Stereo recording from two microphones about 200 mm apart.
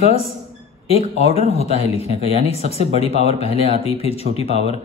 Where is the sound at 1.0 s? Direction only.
30° left (ahead or behind).